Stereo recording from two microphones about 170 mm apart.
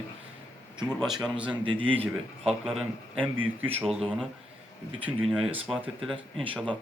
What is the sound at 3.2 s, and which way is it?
Speech, 30° right (ahead or behind).